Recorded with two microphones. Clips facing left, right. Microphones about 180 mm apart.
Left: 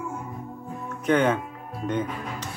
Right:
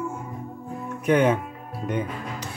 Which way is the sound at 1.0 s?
10° right (ahead or behind).